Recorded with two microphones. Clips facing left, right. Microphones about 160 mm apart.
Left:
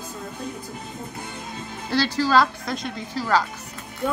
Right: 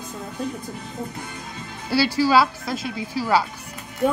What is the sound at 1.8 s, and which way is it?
A woman's voice, 10° right (ahead or behind).